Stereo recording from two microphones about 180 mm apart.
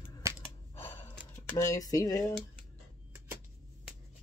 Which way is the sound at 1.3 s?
20° left (ahead or behind).